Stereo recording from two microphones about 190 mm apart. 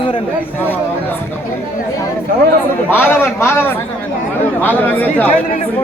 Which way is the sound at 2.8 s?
10° left (ahead or behind).